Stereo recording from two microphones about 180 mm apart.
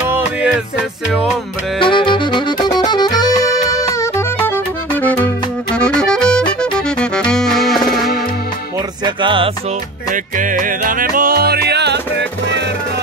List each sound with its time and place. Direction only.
0.1 s music: 5° right (ahead or behind)
1.8 s music: 25° left (ahead or behind); by 7.8 s centre (ahead or behind)
9.0 s music: 30° right (ahead or behind)
10.1 s music: 45° right (ahead or behind); by 12.6 s 75° right (ahead or behind)